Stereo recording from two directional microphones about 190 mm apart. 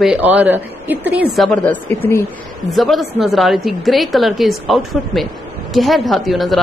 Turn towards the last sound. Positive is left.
turn(degrees=0)  # may be behind; listen again after turning